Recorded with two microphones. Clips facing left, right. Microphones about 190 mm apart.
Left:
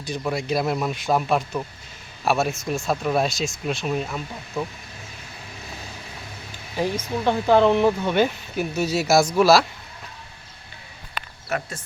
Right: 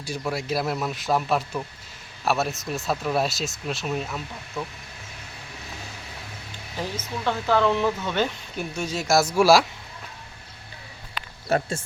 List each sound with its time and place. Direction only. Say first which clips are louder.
0.2 s speech: left 3 dB; centre (ahead or behind)
4.6 s speech: left 4 dB; 15° left (ahead or behind)
6.7 s speech: left 7 dB; 15° left (ahead or behind); by 9.6 s 10° right (ahead or behind)
11.4 s speech: right 5 dB; 30° right (ahead or behind)